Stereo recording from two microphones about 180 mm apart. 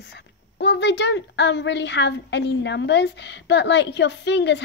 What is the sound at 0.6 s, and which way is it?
A woman's voice, 75° left (ahead or behind).